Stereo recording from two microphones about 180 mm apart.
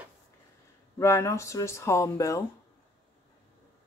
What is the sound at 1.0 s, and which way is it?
Speech, 15° left (ahead or behind).